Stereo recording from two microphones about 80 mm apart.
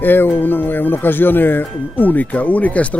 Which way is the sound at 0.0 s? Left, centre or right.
Left.